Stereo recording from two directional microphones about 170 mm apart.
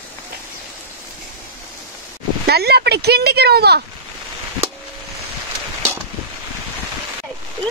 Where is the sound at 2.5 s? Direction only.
70° right (ahead or behind).